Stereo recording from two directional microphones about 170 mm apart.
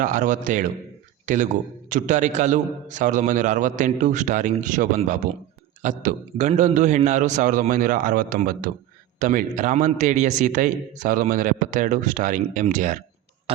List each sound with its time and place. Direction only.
0.0 s a man's voice: 50° right (ahead or behind)